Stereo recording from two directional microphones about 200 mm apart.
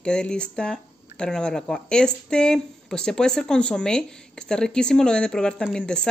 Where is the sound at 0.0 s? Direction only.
5° left (ahead or behind).